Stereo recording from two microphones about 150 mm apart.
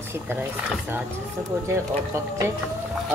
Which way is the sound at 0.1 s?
15° right (ahead or behind).